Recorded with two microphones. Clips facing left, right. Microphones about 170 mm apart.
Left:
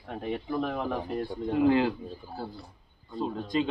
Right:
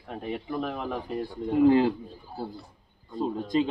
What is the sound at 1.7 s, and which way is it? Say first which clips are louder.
Speech: right 3 dB; 35° right (ahead or behind).